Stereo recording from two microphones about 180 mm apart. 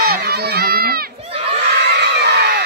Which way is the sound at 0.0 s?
60° right (ahead or behind).